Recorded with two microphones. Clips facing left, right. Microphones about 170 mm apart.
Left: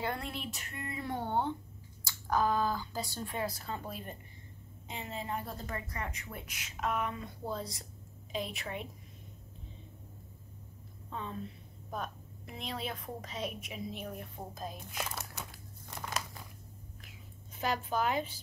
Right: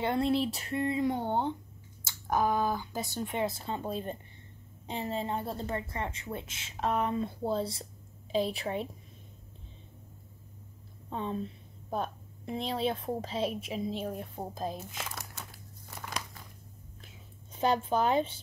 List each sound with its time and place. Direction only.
0.0 s speech: 25° right (ahead or behind)
1.0 s a woman's voice: 20° right (ahead or behind)
11.1 s a woman's voice: 30° right (ahead or behind)
15.9 s crumpling: centre (ahead or behind)
17.6 s a woman's voice: 30° right (ahead or behind)